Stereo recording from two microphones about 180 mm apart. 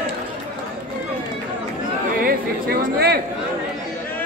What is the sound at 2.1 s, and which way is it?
Chatter, 60° right (ahead or behind).